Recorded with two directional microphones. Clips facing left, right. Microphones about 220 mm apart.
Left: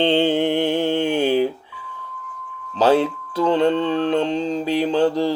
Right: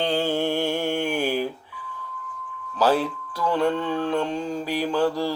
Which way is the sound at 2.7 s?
25° left (ahead or behind).